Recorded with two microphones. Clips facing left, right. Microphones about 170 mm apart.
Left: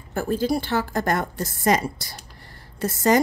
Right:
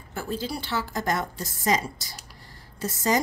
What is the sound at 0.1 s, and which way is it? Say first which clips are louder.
A woman's voice: left 8 dB; 50° left (ahead or behind).